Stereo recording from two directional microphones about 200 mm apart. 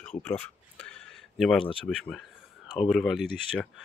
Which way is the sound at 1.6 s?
25° left (ahead or behind).